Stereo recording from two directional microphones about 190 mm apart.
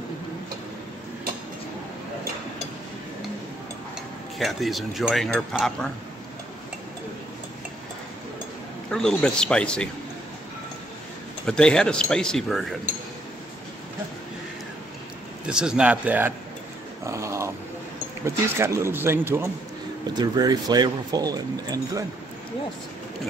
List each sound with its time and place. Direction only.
4.4 s speech: centre (ahead or behind)
8.9 s speech: 5° left (ahead or behind)
11.4 s speech: 5° left (ahead or behind)
15.4 s speech: 5° right (ahead or behind)
17.0 s dog: 15° right (ahead or behind)
18.2 s speech: 15° right (ahead or behind)